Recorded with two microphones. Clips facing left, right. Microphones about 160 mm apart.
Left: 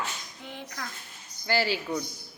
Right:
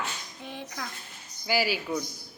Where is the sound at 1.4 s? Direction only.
10° right (ahead or behind).